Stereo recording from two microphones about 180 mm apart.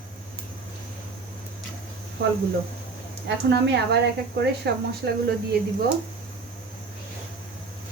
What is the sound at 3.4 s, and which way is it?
A woman's voice, 75° right (ahead or behind).